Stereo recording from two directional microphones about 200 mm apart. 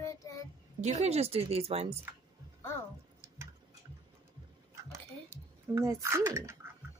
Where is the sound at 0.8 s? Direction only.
35° right (ahead or behind).